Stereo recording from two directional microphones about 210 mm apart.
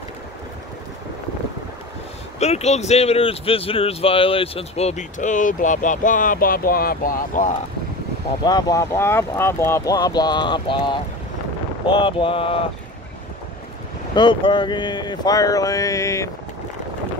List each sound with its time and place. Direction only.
2.3 s speech: 30° left (ahead or behind)
8.5 s speech: 20° left (ahead or behind)
14.1 s speech: 25° left (ahead or behind)